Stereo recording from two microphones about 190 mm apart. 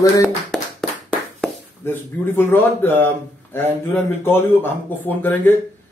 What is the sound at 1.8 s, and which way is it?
A man's voice, 10° left (ahead or behind).